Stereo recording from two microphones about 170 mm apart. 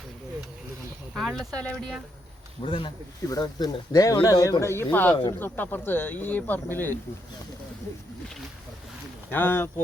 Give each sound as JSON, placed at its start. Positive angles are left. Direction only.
{"t": 1.1, "sound": "speech", "side_deg": 0}
{"t": 2.6, "sound": "speech", "side_deg": 30}
{"t": 9.3, "sound": "speech", "side_deg": 10}